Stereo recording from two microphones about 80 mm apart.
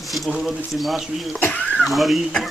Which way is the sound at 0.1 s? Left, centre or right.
Centre.